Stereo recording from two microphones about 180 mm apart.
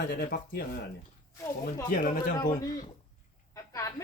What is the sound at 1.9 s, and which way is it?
Speech, 50° left (ahead or behind).